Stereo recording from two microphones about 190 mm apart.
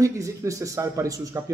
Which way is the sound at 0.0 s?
15° right (ahead or behind).